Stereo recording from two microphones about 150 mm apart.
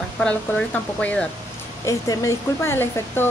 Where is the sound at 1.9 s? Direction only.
20° left (ahead or behind).